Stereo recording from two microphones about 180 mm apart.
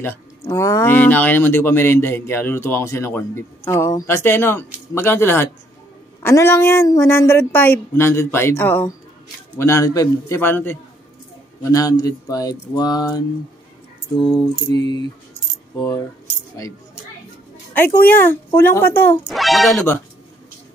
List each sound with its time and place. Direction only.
0.0 s speech: 15° left (ahead or behind)
14.1 s speech: centre (ahead or behind)
14.7 s speech: 20° left (ahead or behind)
17.7 s speech: 10° left (ahead or behind)
19.2 s speech: centre (ahead or behind)